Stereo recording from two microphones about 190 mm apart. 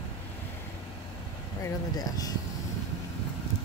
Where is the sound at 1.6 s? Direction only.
20° left (ahead or behind).